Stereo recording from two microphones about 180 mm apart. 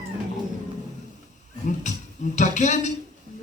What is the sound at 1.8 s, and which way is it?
Speech, 40° left (ahead or behind).